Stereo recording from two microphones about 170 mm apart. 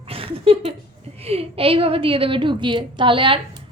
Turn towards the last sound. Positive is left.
turn(degrees=-30)  # may be behind; listen again after turning